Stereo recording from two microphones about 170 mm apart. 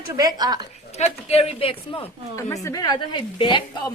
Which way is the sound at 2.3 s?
20° left (ahead or behind).